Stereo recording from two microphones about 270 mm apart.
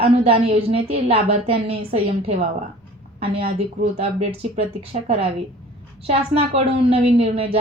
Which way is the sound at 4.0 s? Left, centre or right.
Right.